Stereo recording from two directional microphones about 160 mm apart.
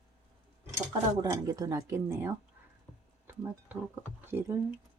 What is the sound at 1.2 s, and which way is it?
Speech, 20° right (ahead or behind).